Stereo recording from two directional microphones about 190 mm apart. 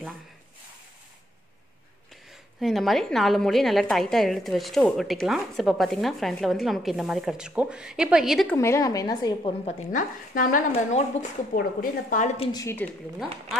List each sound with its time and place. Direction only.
2.6 s a woman's voice: centre (ahead or behind)
8.5 s a woman's voice: 15° left (ahead or behind)
9.7 s a woman's voice: 45° left (ahead or behind)
12.6 s speech: 10° left (ahead or behind)